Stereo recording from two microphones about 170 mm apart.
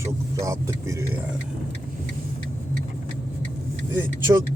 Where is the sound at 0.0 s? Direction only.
20° right (ahead or behind).